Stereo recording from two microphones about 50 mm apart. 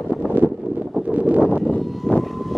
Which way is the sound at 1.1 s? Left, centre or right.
Right.